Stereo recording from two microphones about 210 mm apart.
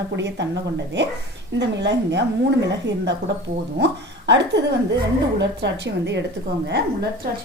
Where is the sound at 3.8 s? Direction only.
55° right (ahead or behind).